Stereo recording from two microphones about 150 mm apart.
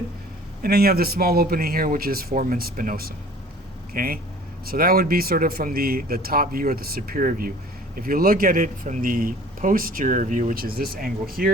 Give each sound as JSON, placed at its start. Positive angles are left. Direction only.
{"t": 0.6, "sound": "a man's voice", "side_deg": -90}